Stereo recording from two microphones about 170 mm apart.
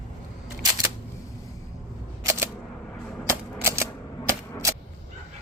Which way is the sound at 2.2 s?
15° right (ahead or behind).